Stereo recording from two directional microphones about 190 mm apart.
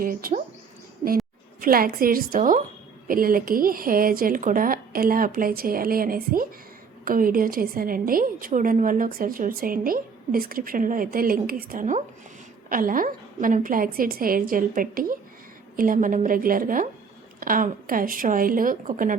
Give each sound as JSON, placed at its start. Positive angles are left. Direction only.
{"t": 0.0, "sound": "a woman's voice", "side_deg": -50}
{"t": 1.0, "sound": "a woman's voice", "side_deg": -30}
{"t": 1.6, "sound": "a woman's voice", "side_deg": -50}